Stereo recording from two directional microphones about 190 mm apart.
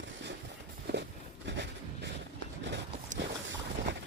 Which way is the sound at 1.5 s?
65° right (ahead or behind).